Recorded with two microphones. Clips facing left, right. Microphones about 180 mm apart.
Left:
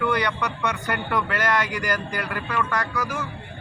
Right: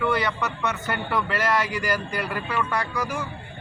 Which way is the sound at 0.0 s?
5° right (ahead or behind).